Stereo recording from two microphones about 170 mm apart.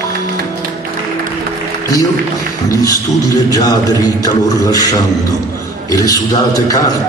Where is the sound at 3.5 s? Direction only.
20° left (ahead or behind).